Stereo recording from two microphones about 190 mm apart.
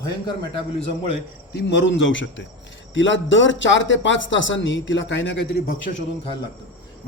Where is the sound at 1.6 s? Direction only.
65° left (ahead or behind).